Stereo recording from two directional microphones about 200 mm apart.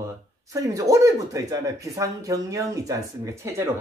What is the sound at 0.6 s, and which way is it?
Speech, 15° right (ahead or behind).